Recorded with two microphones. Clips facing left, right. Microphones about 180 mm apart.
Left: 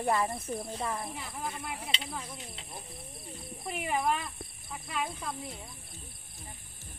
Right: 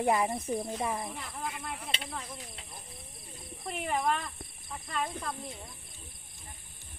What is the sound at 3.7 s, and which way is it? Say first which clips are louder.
Speech: even; 5° left (ahead or behind).